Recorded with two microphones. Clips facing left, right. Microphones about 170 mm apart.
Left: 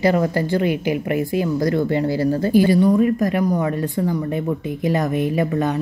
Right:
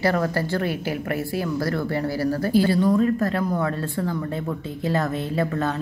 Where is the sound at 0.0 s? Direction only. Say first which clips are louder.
Left 4 dB; 15° left (ahead or behind).